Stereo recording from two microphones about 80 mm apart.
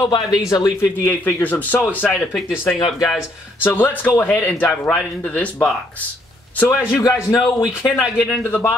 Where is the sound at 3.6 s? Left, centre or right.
Left.